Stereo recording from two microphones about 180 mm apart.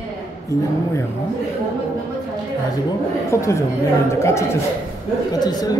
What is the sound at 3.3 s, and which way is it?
Speech, 15° left (ahead or behind).